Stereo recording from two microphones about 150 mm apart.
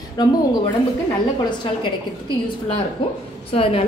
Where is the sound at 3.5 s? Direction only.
40° left (ahead or behind).